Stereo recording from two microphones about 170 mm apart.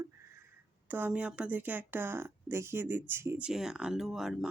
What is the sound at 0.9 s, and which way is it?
Speech, 10° right (ahead or behind).